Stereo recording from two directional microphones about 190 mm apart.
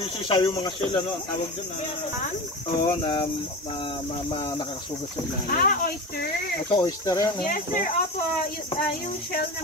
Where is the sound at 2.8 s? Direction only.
25° left (ahead or behind).